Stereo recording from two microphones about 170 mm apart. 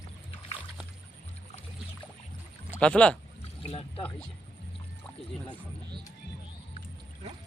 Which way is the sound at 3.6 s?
35° left (ahead or behind).